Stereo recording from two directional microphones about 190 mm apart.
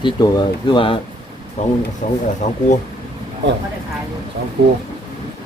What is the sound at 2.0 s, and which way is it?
Speech, 40° left (ahead or behind).